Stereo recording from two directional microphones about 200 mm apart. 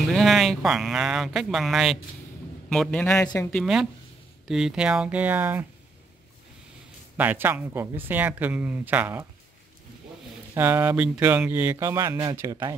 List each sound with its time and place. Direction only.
0.0 s speech: centre (ahead or behind)
7.2 s speech: 10° right (ahead or behind)
10.5 s speech: 10° right (ahead or behind)